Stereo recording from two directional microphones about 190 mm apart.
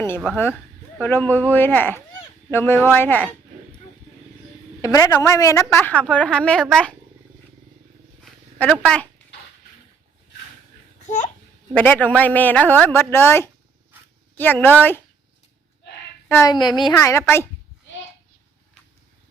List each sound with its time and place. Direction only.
0.9 s a woman's voice: 10° left (ahead or behind)
4.8 s a woman's voice: 20° left (ahead or behind)
8.2 s a sound: 5° left (ahead or behind)
11.7 s a woman's voice: 5° left (ahead or behind)
16.3 s a woman's voice: 20° left (ahead or behind)